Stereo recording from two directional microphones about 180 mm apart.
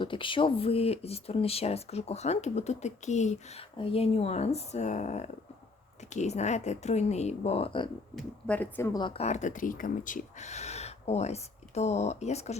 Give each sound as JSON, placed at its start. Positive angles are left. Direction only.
{"t": 0.0, "sound": "speech", "side_deg": 25}
{"t": 8.1, "sound": "speech", "side_deg": 10}